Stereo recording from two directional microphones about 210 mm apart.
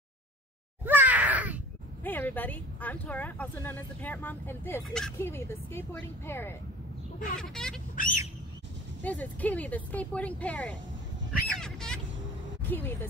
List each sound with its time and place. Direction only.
0.8 s caw: 10° right (ahead or behind)
2.0 s speech: 10° left (ahead or behind)
7.9 s bird: 40° left (ahead or behind)
9.0 s speech: 5° left (ahead or behind)
11.4 s a sound: 5° left (ahead or behind)
12.6 s speech: 10° left (ahead or behind)